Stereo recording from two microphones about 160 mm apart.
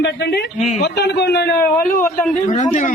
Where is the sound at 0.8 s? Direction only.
90° left.